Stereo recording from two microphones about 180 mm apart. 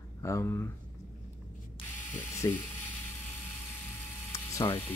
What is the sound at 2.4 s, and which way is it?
Ratchet, 20° left (ahead or behind).